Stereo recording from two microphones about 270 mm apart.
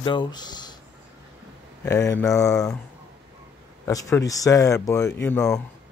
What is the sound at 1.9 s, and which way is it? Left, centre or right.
Speech, centre.